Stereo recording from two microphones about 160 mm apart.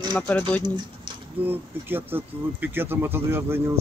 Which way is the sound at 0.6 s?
30° right (ahead or behind).